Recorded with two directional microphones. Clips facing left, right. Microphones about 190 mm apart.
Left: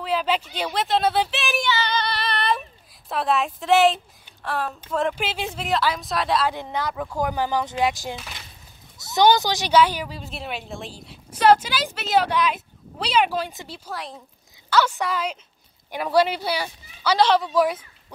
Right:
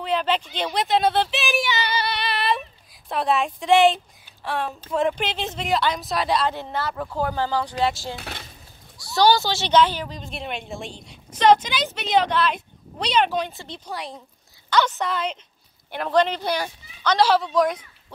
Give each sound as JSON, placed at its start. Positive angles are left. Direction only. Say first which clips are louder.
{"t": 0.0, "sound": "a woman's voice", "louder": "even", "side_deg": 5}
{"t": 1.7, "sound": "female singing", "louder": "left 1 dB", "side_deg": -10}
{"t": 3.1, "sound": "a woman's voice", "louder": "right 1 dB", "side_deg": 0}
{"t": 6.5, "sound": "speech", "louder": "even", "side_deg": 15}
{"t": 8.2, "sound": "a sound", "louder": "right 4 dB", "side_deg": -55}
{"t": 8.9, "sound": "a woman's voice", "louder": "left 1 dB", "side_deg": 20}
{"t": 17.2, "sound": "a woman's voice", "louder": "even", "side_deg": -5}
{"t": 17.5, "sound": "a woman's voice", "louder": "even", "side_deg": 5}